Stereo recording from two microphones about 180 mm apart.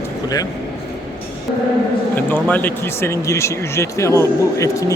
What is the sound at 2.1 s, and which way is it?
Speech, 10° left (ahead or behind).